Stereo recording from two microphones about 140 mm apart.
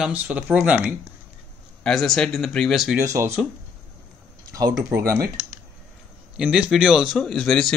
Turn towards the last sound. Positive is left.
turn(degrees=0)  # may be behind; listen again after turning